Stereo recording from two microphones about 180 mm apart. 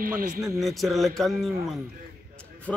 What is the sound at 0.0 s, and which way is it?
Speech, 50° right (ahead or behind).